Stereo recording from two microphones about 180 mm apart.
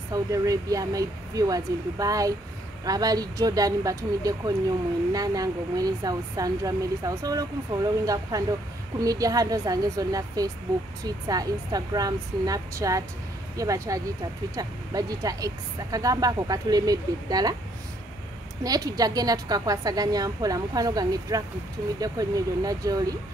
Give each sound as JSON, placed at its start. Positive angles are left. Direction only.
{"t": 0.1, "sound": "speech", "side_deg": -20}
{"t": 18.6, "sound": "speech", "side_deg": -20}